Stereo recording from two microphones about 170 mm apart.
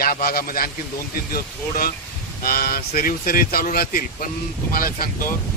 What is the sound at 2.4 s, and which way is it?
Speech, 60° left (ahead or behind).